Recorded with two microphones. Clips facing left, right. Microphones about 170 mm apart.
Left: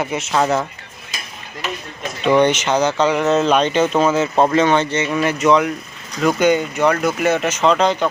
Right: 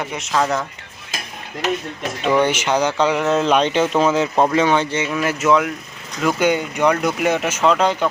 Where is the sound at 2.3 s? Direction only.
5° right (ahead or behind).